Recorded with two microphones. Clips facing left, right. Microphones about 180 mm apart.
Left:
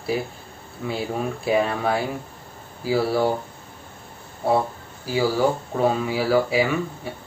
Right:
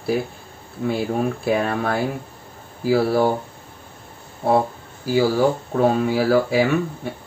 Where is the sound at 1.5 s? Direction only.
55° right (ahead or behind).